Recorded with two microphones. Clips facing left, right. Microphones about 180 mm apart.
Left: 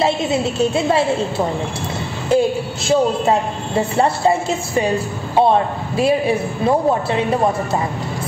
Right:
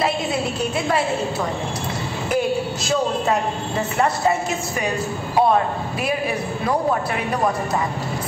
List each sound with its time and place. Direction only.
0.0 s a woman's voice: 25° left (ahead or behind)
2.2 s a sound: 25° left (ahead or behind)
3.9 s a woman's voice: 30° left (ahead or behind)